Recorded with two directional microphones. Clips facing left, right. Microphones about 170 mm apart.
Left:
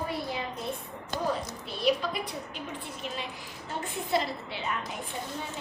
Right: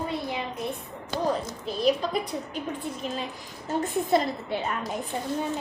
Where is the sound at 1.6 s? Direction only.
40° right (ahead or behind).